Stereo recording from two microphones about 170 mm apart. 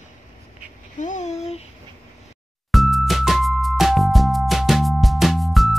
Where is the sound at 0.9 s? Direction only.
45° left (ahead or behind).